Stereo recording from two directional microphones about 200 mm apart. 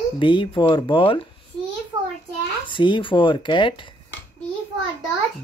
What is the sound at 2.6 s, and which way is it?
Speech, 25° left (ahead or behind).